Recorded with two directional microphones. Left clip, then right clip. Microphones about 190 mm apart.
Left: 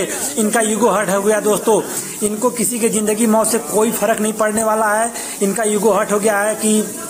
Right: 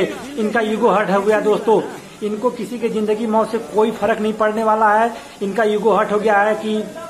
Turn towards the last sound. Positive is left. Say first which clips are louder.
# right 1 dB
turn(degrees=35)  # may be behind; listen again after turning